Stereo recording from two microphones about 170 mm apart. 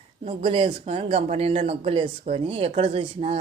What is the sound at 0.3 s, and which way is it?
Speech, 35° right (ahead or behind).